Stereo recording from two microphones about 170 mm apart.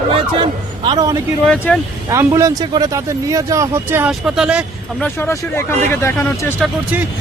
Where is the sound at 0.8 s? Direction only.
25° right (ahead or behind).